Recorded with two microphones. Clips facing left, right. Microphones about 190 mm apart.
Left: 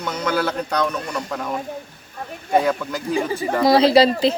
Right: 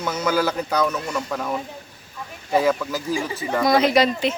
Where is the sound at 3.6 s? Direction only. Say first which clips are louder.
Left 4 dB; 30° left (ahead or behind).